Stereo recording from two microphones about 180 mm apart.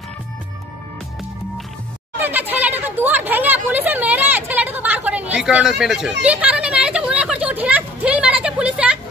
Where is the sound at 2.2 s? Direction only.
10° right (ahead or behind).